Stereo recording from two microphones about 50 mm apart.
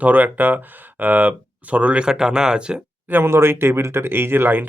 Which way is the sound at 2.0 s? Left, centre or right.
Centre.